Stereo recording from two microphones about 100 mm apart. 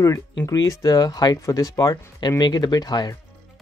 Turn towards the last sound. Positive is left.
turn(degrees=45)  # may be behind; listen again after turning